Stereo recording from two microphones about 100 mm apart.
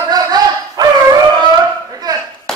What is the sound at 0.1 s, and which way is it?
Dog, 40° right (ahead or behind).